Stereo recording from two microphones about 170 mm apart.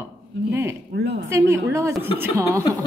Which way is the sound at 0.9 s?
75° right (ahead or behind).